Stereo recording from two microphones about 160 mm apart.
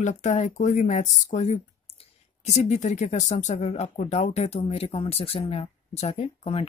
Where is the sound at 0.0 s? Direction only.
50° left (ahead or behind).